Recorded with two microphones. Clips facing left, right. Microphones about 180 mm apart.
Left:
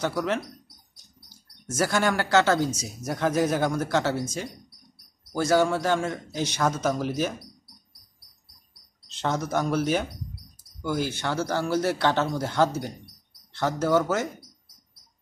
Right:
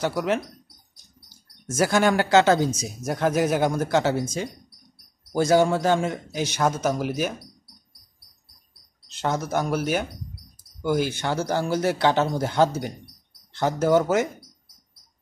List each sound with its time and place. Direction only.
0.0 s a man's voice: 15° right (ahead or behind)
1.7 s a man's voice: 10° right (ahead or behind)
5.3 s a man's voice: 15° right (ahead or behind)
9.1 s a man's voice: 5° right (ahead or behind)